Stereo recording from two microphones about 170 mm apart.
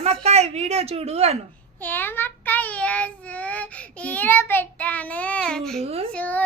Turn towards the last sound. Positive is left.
turn(degrees=10)  # may be behind; listen again after turning